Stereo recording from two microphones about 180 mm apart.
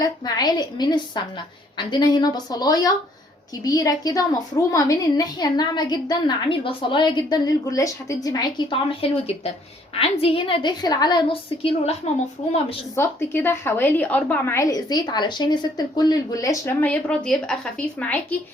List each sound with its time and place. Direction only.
0.0 s a woman's voice: 20° left (ahead or behind)
13.0 s a woman's voice: 10° left (ahead or behind)